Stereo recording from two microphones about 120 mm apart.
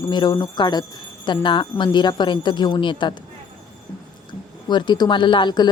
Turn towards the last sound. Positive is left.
turn(degrees=40)  # may be behind; listen again after turning